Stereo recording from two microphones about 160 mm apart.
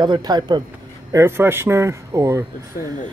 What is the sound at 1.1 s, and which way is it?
Speech, 15° right (ahead or behind).